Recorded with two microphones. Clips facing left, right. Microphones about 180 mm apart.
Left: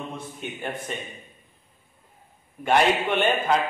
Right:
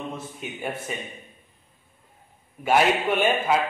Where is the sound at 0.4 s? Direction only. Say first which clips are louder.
Even; 5° right (ahead or behind).